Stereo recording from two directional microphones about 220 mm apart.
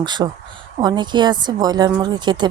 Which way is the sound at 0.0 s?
20° right (ahead or behind).